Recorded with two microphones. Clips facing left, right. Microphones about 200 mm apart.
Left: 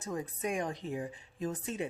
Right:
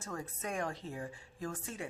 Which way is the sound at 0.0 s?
15° left (ahead or behind).